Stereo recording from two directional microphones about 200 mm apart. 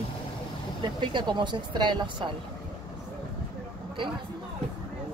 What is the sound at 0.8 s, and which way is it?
Speech, 25° right (ahead or behind).